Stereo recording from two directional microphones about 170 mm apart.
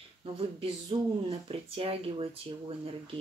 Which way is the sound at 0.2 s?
35° right (ahead or behind).